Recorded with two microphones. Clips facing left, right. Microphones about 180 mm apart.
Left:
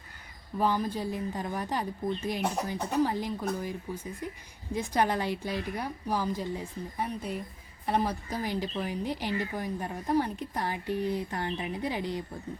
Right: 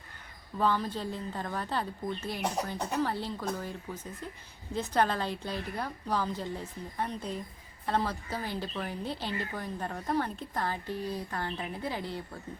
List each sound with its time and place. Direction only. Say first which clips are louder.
0.6 s a woman's voice: left 1 dB; 15° left (ahead or behind)